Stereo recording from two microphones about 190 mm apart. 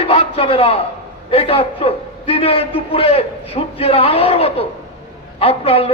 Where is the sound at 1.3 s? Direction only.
30° left (ahead or behind).